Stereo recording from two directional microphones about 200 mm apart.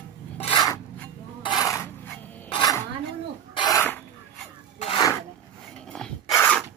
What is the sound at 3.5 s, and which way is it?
Sneeze, 15° left (ahead or behind).